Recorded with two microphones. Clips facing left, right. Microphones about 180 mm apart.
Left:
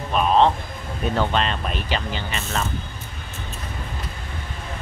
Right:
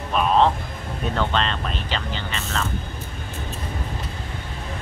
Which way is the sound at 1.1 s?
10° left (ahead or behind).